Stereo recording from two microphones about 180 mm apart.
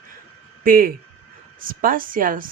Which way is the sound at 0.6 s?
55° right (ahead or behind).